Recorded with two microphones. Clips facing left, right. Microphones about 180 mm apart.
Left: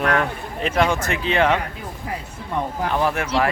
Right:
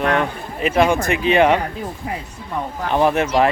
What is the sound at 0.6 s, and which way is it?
Speech, 10° right (ahead or behind).